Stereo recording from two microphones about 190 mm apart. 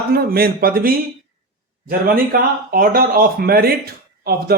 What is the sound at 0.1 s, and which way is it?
Speech, 50° right (ahead or behind).